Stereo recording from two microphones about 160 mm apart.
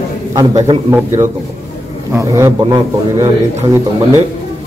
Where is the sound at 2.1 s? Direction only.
20° right (ahead or behind).